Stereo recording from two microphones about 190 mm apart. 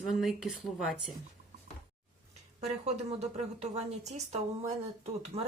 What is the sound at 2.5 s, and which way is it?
A woman's voice, 35° right (ahead or behind).